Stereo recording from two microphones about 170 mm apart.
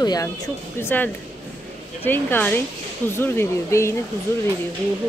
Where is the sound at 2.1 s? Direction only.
10° left (ahead or behind).